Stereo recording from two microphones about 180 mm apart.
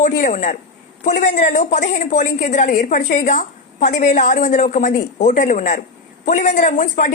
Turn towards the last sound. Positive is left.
turn(degrees=45)  # may be behind; listen again after turning